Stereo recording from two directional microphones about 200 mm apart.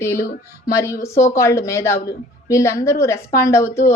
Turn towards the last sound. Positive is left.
turn(degrees=15)  # may be behind; listen again after turning